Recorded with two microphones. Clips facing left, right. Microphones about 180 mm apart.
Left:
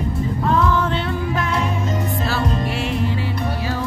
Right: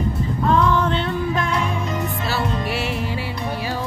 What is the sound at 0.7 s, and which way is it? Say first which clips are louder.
Music: even; 5° left (ahead or behind).